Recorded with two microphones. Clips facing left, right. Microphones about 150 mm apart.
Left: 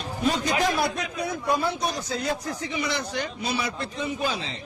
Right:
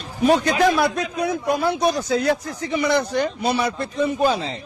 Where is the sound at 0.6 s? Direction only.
70° right (ahead or behind).